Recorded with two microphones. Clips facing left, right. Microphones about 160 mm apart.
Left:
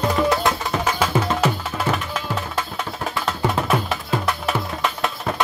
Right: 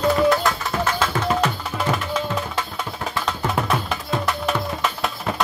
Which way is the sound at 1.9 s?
10° right (ahead or behind).